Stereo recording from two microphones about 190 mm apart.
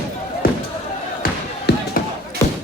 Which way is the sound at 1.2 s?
50° left (ahead or behind).